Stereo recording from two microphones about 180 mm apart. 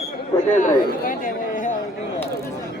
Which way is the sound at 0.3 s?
45° left (ahead or behind).